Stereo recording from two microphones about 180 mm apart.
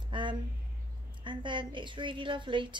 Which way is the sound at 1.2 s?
25° right (ahead or behind).